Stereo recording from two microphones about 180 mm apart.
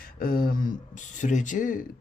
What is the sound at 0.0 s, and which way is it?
Speech, 55° left (ahead or behind).